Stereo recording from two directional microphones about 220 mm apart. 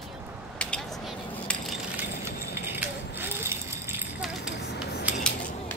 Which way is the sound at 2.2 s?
10° right (ahead or behind).